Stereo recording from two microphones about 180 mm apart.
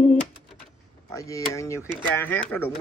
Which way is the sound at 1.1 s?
15° left (ahead or behind).